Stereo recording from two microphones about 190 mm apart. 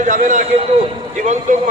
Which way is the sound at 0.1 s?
40° right (ahead or behind).